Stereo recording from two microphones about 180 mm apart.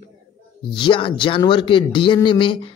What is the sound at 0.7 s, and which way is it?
A man's voice, 25° left (ahead or behind).